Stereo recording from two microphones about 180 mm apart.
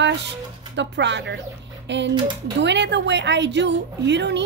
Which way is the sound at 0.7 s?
75° right (ahead or behind).